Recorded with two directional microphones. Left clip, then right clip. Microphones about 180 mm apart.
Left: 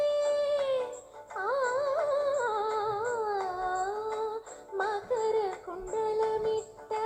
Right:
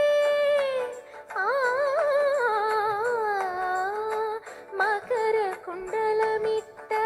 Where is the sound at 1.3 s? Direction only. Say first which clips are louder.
Right 5 dB; 40° right (ahead or behind).